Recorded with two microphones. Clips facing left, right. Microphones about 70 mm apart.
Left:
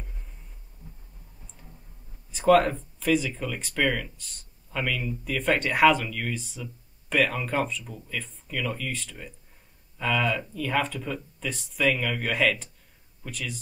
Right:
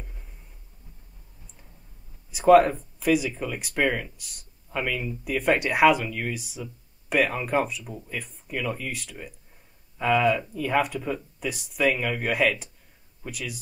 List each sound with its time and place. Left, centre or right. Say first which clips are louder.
2.3 s speech: right 3 dB; centre